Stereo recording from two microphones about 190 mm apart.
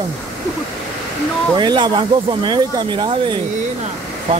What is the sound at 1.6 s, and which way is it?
Speech, 25° right (ahead or behind).